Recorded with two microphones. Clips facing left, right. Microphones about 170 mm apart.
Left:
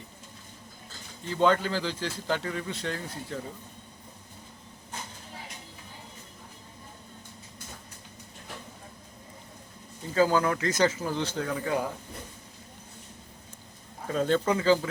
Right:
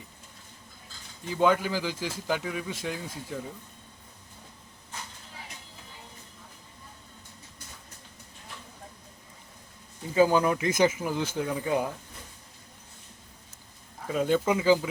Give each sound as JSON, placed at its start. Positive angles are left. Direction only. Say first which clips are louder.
{"t": 1.3, "sound": "speech", "louder": "even", "side_deg": -10}
{"t": 10.2, "sound": "speech", "louder": "right 2 dB", "side_deg": -15}
{"t": 14.1, "sound": "speech", "louder": "even", "side_deg": -10}